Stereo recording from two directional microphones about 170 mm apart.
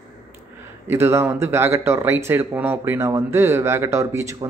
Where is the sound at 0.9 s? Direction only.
15° right (ahead or behind).